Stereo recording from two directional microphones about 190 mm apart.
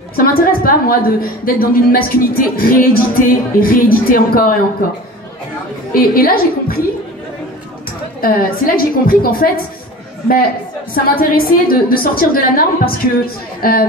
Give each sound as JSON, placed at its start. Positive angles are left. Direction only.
{"t": 0.1, "sound": "a woman's voice", "side_deg": 50}
{"t": 5.9, "sound": "a woman's voice", "side_deg": 50}
{"t": 8.2, "sound": "a woman's voice", "side_deg": 50}
{"t": 11.1, "sound": "a woman's voice", "side_deg": 50}